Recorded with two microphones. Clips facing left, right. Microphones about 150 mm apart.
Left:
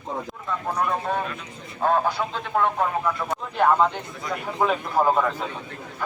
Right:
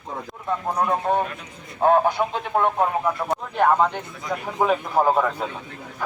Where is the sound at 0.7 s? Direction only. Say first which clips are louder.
Right 4 dB; 30° right (ahead or behind); by 5.3 s 10° right (ahead or behind).